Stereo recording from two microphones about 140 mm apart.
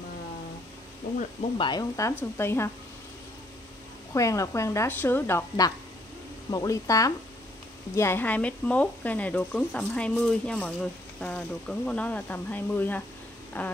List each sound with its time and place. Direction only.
1.6 s a woman's voice: 30° left (ahead or behind)
4.1 s a woman's voice: 20° left (ahead or behind)